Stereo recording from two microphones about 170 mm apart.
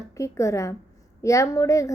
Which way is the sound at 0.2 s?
20° left (ahead or behind).